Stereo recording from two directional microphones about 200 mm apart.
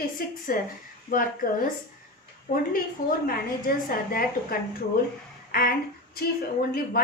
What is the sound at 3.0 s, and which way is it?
A woman's voice, 45° left (ahead or behind).